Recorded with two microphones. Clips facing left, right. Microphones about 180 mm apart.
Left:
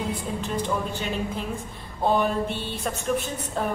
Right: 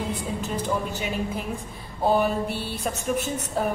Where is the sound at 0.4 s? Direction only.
5° right (ahead or behind).